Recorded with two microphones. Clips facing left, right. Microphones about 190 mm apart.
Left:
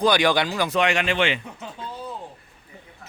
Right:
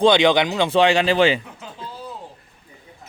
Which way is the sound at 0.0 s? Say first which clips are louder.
Right 5 dB; 25° right (ahead or behind).